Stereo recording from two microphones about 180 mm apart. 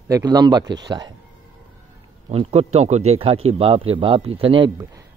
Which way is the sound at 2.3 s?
35° right (ahead or behind).